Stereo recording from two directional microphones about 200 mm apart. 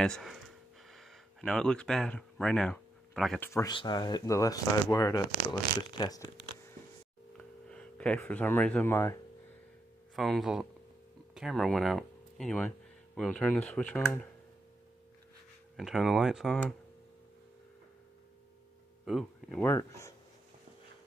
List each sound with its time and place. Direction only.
0.0 s a sound: centre (ahead or behind)
3.7 s speech: 20° left (ahead or behind)
7.6 s speech: 5° left (ahead or behind)
10.1 s speech: centre (ahead or behind)
15.7 s speech: centre (ahead or behind)
19.0 s speech: centre (ahead or behind)
19.6 s speech: 15° left (ahead or behind)